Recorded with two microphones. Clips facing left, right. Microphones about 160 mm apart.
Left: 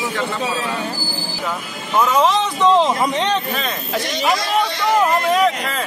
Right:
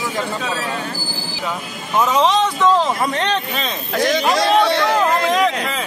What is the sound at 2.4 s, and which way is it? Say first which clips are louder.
Speech: left 1 dB; 20° left (ahead or behind).